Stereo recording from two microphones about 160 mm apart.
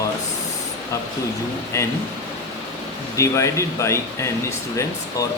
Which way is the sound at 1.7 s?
20° left (ahead or behind).